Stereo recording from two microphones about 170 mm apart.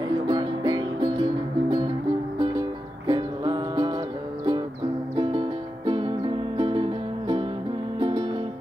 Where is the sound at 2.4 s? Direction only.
25° right (ahead or behind).